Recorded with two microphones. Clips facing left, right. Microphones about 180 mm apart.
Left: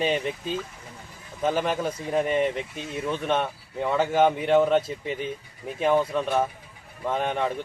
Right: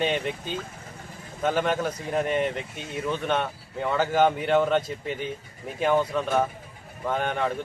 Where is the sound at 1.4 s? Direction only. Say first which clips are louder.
Even; centre (ahead or behind).